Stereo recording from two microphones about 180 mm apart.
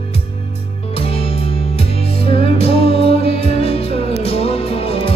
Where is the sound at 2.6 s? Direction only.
35° left (ahead or behind).